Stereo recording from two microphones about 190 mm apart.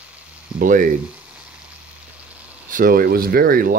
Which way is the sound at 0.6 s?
45° right (ahead or behind).